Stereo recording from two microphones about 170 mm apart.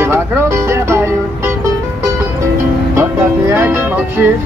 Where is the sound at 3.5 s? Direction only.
15° right (ahead or behind).